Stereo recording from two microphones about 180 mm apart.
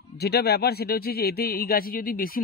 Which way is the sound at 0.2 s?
60° left (ahead or behind).